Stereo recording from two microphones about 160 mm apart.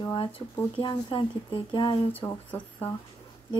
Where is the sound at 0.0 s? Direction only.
30° left (ahead or behind).